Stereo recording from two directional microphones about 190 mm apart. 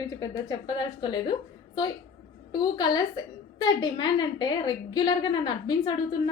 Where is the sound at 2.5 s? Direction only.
20° left (ahead or behind).